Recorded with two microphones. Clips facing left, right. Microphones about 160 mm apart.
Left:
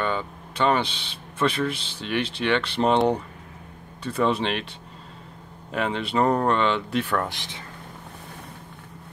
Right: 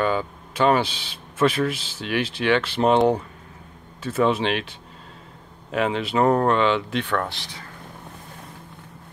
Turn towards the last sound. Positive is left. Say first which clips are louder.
# right 1 dB
turn(degrees=15)  # may be behind; listen again after turning